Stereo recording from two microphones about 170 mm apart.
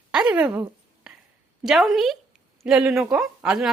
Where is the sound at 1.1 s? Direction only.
5° right (ahead or behind).